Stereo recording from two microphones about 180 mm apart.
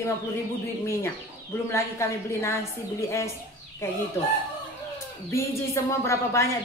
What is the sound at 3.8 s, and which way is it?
Speech, 15° left (ahead or behind).